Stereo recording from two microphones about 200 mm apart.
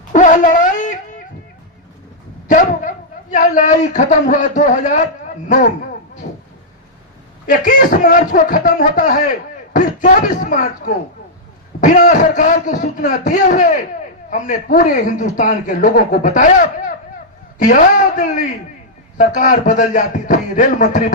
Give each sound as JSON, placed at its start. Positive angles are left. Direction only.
{"t": 0.1, "sound": "dog", "side_deg": 40}
{"t": 2.5, "sound": "dog", "side_deg": 40}
{"t": 3.3, "sound": "speech", "side_deg": 40}
{"t": 7.4, "sound": "speech", "side_deg": 45}